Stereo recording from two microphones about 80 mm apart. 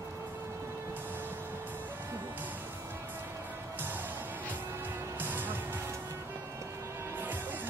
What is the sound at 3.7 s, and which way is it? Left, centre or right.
Music, right.